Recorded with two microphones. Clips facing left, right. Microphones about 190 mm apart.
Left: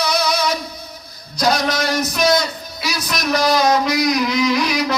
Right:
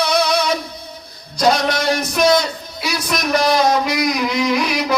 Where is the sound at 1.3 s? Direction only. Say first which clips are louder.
Right 2 dB; 60° right (ahead or behind).